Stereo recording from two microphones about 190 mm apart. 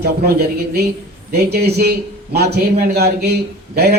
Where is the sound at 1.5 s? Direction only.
55° right (ahead or behind).